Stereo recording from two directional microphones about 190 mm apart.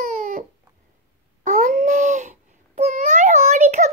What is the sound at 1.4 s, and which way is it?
Babbling, 40° right (ahead or behind).